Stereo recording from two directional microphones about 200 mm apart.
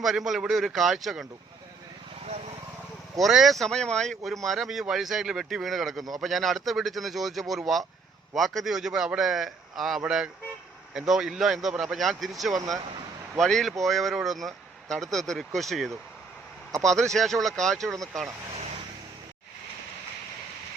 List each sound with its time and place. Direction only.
0.0 s speech: centre (ahead or behind)
3.2 s speech: centre (ahead or behind)